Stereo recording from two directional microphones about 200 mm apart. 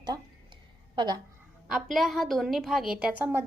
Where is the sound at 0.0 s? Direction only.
20° right (ahead or behind).